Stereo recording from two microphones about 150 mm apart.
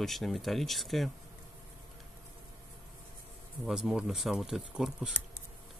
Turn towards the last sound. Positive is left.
turn(degrees=-5)  # may be behind; listen again after turning